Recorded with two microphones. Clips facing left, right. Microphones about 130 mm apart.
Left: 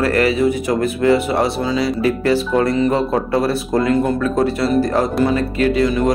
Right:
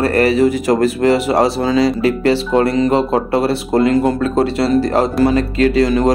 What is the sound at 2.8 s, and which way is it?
Speech, 30° right (ahead or behind).